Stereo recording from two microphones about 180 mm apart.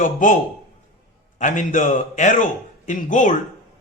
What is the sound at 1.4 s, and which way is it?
Speech, 45° left (ahead or behind).